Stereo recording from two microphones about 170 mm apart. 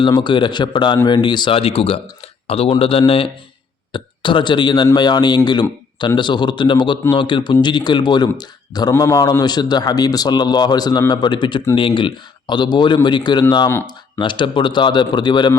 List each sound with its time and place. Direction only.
0.0 s speech: 25° left (ahead or behind)